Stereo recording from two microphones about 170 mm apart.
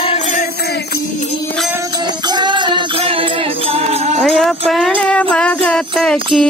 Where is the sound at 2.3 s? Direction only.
25° right (ahead or behind).